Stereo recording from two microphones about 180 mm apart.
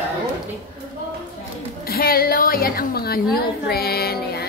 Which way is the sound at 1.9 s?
55° left (ahead or behind).